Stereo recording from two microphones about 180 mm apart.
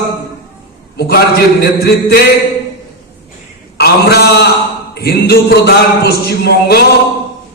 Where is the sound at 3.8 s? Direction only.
65° left (ahead or behind).